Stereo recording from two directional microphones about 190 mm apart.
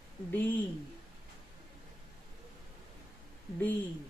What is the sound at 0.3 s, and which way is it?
Speech, 10° left (ahead or behind).